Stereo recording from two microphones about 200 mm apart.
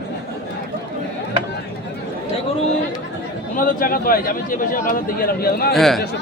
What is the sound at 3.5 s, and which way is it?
A man's voice, 40° left (ahead or behind).